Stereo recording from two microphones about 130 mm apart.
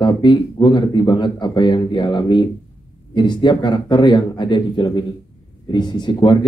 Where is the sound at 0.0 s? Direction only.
35° left (ahead or behind).